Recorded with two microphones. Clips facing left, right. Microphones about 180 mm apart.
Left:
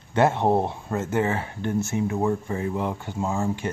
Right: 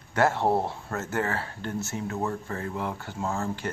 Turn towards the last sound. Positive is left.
turn(degrees=15)  # may be behind; listen again after turning